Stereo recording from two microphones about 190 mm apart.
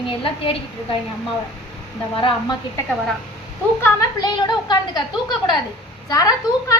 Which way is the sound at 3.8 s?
20° left (ahead or behind).